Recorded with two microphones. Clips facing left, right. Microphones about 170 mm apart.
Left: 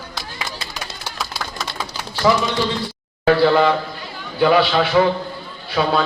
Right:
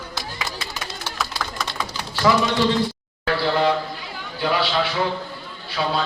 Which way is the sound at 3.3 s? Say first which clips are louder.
Left 6 dB; 55° left (ahead or behind).